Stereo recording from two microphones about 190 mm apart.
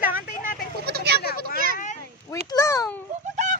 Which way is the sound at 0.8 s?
55° right (ahead or behind).